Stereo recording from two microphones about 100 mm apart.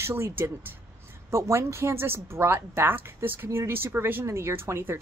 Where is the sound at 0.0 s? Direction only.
25° right (ahead or behind).